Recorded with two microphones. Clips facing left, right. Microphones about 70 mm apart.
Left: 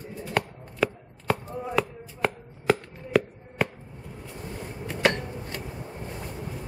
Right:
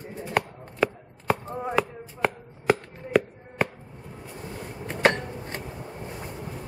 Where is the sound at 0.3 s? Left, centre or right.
Centre.